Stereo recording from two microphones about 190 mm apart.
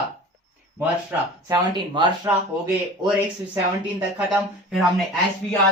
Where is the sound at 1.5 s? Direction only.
25° right (ahead or behind).